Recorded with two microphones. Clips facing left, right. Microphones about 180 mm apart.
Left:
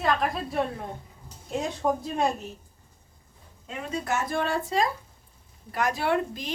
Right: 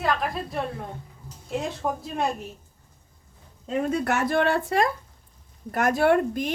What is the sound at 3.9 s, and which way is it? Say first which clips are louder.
Speech: right 2 dB; 60° right (ahead or behind).